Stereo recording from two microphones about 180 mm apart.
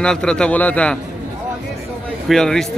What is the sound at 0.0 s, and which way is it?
Speech, 5° left (ahead or behind).